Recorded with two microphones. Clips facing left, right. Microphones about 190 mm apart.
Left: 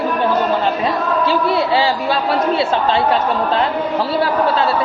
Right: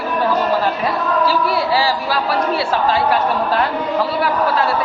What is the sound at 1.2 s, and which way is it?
A man's voice, 20° left (ahead or behind).